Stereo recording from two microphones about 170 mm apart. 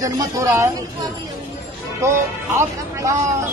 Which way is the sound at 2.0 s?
15° right (ahead or behind).